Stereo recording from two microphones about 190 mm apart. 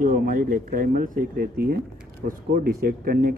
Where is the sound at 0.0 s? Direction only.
45° right (ahead or behind).